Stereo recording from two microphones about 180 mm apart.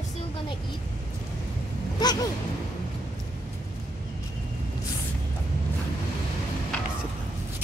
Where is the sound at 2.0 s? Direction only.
20° left (ahead or behind).